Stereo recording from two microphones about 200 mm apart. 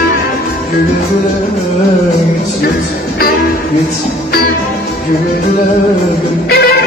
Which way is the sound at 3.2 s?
50° left (ahead or behind).